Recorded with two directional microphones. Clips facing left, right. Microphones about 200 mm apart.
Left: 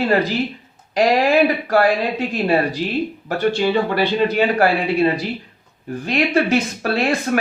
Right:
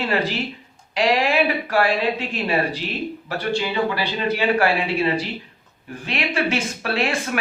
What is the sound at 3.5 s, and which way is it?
Speech, 50° left (ahead or behind).